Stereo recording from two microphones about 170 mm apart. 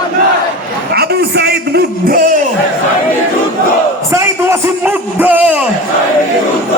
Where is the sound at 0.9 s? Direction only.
65° right (ahead or behind).